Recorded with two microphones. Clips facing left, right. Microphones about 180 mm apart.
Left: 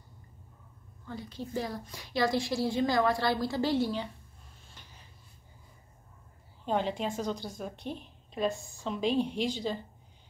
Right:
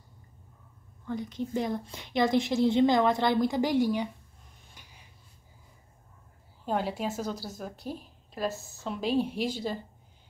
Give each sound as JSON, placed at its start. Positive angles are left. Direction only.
{"t": 1.0, "sound": "a woman's voice", "side_deg": -20}
{"t": 4.7, "sound": "a sound", "side_deg": -10}
{"t": 6.6, "sound": "a woman's voice", "side_deg": -5}